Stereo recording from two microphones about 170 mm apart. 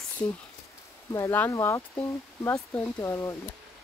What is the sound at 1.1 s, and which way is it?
Speech, 15° left (ahead or behind).